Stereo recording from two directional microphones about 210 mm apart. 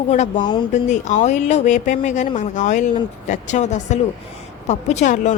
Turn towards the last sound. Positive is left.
turn(degrees=35)  # may be behind; listen again after turning